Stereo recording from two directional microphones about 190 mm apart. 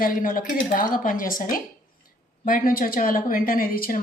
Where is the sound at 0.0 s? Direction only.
45° left (ahead or behind).